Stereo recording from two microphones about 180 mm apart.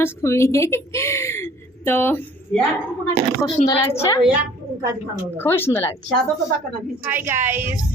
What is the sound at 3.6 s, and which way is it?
Speech, 45° left (ahead or behind).